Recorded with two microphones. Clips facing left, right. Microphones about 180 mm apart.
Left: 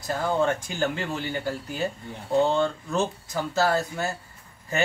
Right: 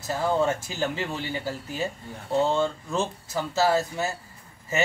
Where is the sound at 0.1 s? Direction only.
5° right (ahead or behind).